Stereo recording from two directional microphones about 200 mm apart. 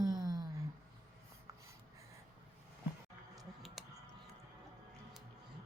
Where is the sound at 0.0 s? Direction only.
20° right (ahead or behind).